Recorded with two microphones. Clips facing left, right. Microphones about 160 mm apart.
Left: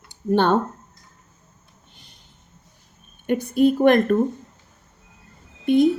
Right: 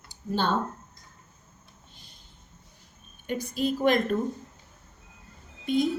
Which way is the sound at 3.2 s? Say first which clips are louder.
Left 10 dB; 60° left (ahead or behind).